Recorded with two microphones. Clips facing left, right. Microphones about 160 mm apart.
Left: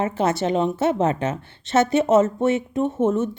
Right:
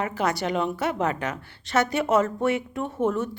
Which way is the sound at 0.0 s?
25° left (ahead or behind).